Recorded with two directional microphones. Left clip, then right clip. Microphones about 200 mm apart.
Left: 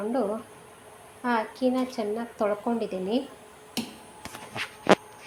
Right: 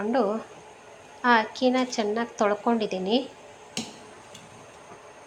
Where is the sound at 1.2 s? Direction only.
10° right (ahead or behind).